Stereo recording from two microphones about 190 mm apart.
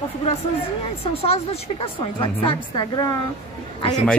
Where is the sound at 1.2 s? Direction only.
30° left (ahead or behind).